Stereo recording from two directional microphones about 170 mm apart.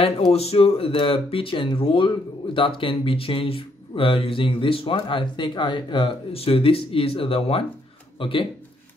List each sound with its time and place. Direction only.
0.3 s a man's voice: 35° left (ahead or behind)